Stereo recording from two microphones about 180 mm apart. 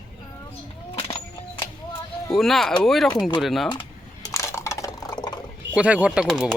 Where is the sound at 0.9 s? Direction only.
35° left (ahead or behind).